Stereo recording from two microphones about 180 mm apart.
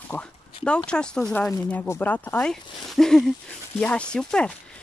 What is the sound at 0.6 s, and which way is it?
Speech, 5° left (ahead or behind).